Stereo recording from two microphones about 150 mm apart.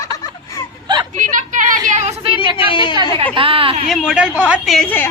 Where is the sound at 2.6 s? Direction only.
35° left (ahead or behind).